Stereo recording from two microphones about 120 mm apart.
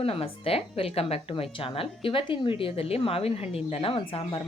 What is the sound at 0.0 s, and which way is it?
Speech, 55° left (ahead or behind).